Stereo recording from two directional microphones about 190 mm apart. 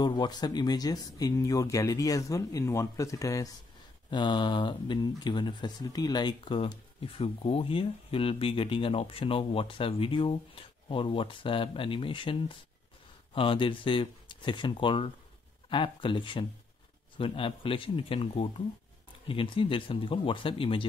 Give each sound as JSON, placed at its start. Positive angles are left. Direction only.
{"t": 0.0, "sound": "speech", "side_deg": 20}